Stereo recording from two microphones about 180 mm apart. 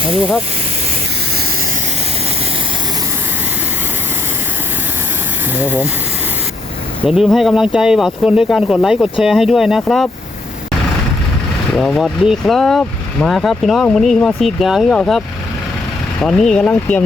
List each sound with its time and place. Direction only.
5.5 s speech: 10° right (ahead or behind)
7.1 s speech: centre (ahead or behind)
11.8 s speech: centre (ahead or behind)
16.2 s speech: 5° left (ahead or behind)